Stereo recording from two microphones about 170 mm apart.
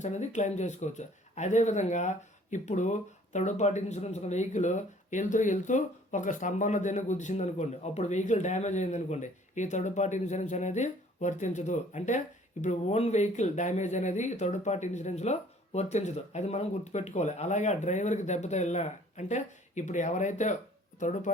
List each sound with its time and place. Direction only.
0.0 s speech: 45° left (ahead or behind)